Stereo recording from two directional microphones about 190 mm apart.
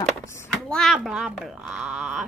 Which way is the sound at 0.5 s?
5° left (ahead or behind).